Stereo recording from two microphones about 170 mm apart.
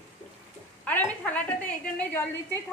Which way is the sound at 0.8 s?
10° left (ahead or behind).